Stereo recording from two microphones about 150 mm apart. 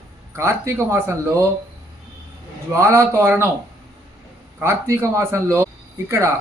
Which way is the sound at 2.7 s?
15° right (ahead or behind).